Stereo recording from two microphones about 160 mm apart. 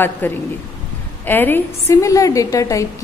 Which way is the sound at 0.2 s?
10° left (ahead or behind).